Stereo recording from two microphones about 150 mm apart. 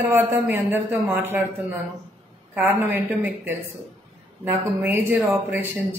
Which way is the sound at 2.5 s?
15° right (ahead or behind).